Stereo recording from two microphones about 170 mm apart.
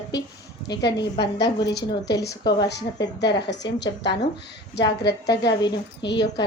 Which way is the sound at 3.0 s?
90° left.